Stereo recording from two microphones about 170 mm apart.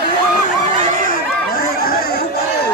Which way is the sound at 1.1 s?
60° left (ahead or behind).